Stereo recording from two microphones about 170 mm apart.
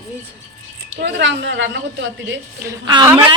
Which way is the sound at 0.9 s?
90° right.